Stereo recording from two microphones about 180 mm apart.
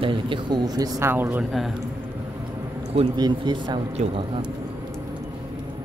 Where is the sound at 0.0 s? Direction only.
25° right (ahead or behind); by 1.8 s centre (ahead or behind).